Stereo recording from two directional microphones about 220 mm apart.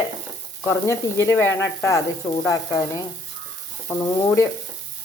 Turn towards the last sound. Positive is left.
turn(degrees=10)  # may be behind; listen again after turning